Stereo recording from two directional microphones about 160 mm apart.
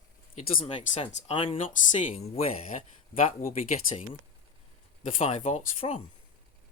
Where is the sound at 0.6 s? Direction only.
35° left (ahead or behind).